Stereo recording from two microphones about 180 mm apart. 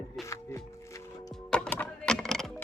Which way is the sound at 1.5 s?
5° left (ahead or behind).